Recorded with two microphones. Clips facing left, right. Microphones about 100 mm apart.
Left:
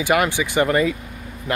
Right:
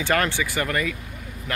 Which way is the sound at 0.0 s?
15° left (ahead or behind).